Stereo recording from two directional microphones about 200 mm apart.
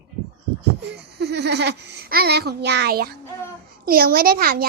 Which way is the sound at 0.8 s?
55° right (ahead or behind).